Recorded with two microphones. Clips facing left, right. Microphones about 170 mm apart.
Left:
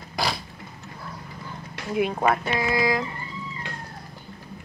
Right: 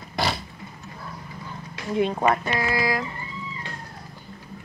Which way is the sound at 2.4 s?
15° left (ahead or behind).